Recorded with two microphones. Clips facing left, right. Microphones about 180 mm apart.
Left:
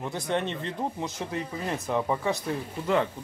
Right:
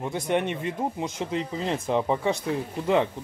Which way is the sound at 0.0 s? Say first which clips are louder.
Right 3 dB; 15° right (ahead or behind).